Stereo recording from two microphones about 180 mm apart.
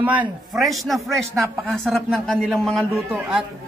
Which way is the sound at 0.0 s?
10° right (ahead or behind).